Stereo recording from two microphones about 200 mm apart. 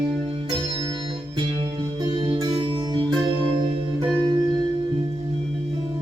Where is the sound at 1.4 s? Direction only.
20° right (ahead or behind).